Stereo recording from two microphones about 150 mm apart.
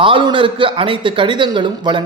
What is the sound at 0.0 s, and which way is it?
Speech, 35° right (ahead or behind).